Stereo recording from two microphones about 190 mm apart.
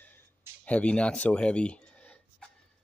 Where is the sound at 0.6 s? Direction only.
5° left (ahead or behind).